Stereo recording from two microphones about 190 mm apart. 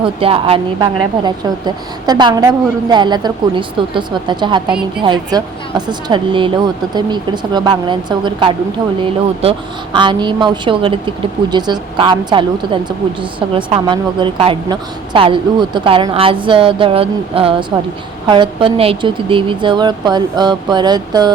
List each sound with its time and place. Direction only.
0.0 s a woman's voice: 30° right (ahead or behind)